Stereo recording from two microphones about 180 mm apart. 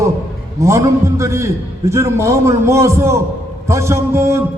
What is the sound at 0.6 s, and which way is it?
A man's voice, 15° right (ahead or behind).